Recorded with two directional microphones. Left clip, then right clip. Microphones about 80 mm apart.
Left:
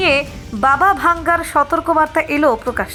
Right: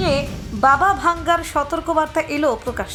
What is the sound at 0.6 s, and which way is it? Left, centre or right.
A woman's voice, left.